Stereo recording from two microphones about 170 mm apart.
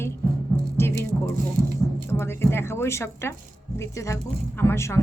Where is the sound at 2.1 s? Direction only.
15° left (ahead or behind).